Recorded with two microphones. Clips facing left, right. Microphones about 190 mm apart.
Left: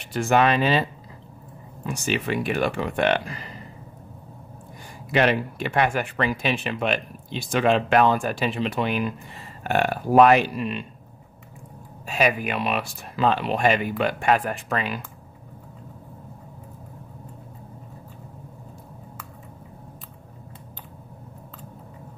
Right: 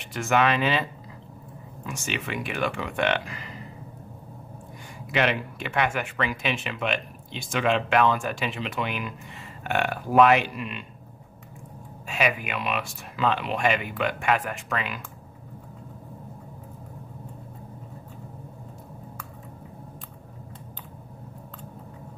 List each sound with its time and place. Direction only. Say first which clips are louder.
0.1 s speech: left 3 dB; 35° left (ahead or behind)
1.9 s speech: left 6 dB; 35° left (ahead or behind)
5.1 s speech: left 4 dB; 40° left (ahead or behind)
12.1 s speech: left 4 dB; 35° left (ahead or behind)